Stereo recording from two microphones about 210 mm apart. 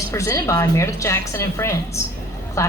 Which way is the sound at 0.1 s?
15° left (ahead or behind).